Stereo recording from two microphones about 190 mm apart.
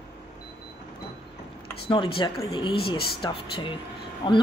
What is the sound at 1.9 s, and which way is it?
A woman's voice, 25° left (ahead or behind).